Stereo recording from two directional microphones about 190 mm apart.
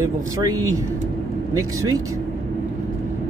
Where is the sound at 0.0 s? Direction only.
20° right (ahead or behind).